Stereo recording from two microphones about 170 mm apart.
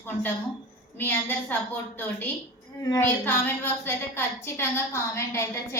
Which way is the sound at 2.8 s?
20° left (ahead or behind).